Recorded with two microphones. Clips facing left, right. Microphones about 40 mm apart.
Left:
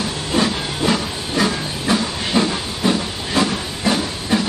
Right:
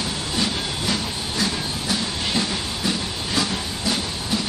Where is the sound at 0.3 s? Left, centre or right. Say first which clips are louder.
Left 7 dB; left.